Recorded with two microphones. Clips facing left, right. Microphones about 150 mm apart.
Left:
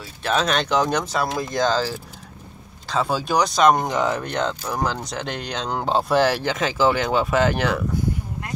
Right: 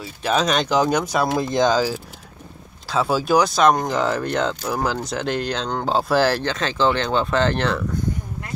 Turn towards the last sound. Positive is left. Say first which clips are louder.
# even
turn(degrees=5)  # may be behind; listen again after turning